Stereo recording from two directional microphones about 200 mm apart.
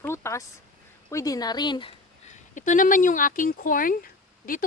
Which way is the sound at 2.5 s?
40° left (ahead or behind).